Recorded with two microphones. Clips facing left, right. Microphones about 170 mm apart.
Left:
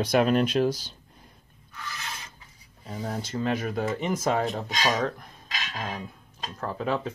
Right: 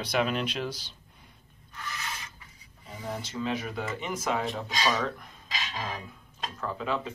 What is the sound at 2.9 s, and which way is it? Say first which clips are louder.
Speech: left 4 dB; 45° left (ahead or behind).